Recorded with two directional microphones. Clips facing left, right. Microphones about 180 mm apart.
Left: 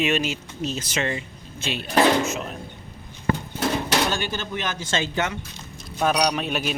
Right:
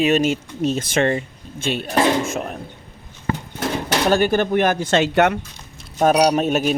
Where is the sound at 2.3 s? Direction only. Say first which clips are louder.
Right 5 dB; 50° right (ahead or behind).